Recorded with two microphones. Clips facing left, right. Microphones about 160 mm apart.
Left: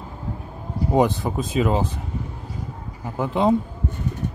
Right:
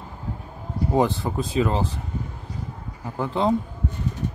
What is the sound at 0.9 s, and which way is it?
Speech, 15° left (ahead or behind).